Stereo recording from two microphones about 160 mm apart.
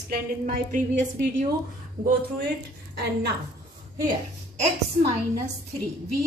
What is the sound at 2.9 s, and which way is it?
Speech, 90° right.